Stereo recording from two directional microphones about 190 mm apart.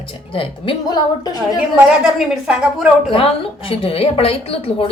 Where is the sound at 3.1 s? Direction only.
30° left (ahead or behind).